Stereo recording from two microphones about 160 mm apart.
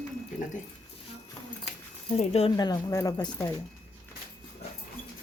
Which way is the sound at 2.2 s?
40° left (ahead or behind).